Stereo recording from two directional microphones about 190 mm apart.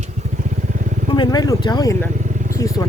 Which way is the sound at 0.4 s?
40° right (ahead or behind).